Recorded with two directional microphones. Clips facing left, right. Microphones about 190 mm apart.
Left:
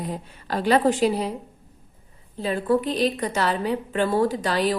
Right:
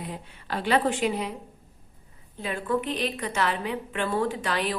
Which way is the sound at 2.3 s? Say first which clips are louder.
Left 6 dB; 35° left (ahead or behind).